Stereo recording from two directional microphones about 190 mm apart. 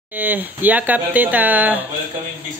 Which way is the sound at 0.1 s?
10° right (ahead or behind).